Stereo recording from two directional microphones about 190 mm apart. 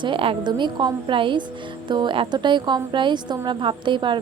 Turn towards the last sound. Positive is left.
turn(degrees=-25)  # may be behind; listen again after turning